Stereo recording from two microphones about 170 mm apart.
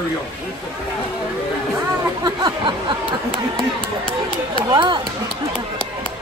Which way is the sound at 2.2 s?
30° right (ahead or behind).